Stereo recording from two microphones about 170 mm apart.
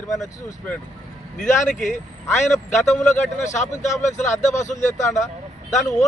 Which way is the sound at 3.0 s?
45° left (ahead or behind).